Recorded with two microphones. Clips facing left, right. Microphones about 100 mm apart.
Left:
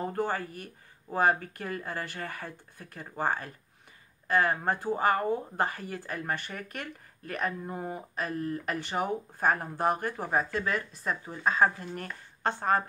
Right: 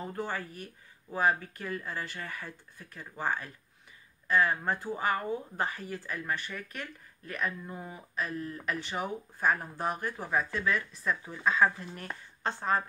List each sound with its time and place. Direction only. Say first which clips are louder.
0.0 s speech: left 5 dB; 45° left (ahead or behind)
5.6 s speech: left 3 dB; 50° left (ahead or behind)
10.1 s speech: left 2 dB; 35° left (ahead or behind)
12.4 s a woman's voice: left 4 dB; 55° left (ahead or behind)